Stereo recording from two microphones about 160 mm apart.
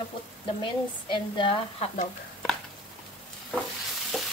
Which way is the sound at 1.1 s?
35° left (ahead or behind).